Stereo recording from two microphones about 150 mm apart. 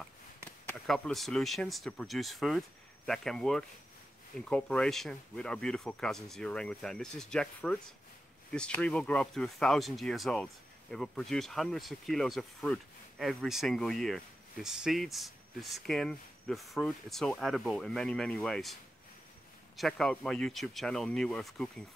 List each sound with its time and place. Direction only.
0.8 s speech: centre (ahead or behind)
19.8 s speech: 5° left (ahead or behind)